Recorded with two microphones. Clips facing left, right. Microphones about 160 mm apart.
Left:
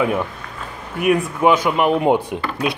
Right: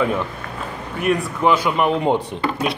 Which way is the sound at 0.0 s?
10° left (ahead or behind).